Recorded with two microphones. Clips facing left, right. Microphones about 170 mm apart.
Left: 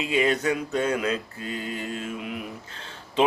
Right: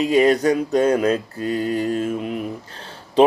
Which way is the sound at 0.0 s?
40° right (ahead or behind).